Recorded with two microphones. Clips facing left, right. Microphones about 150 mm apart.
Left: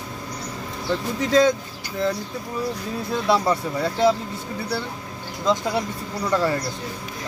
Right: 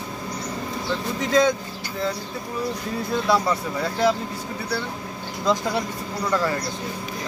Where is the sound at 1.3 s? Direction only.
35° left (ahead or behind).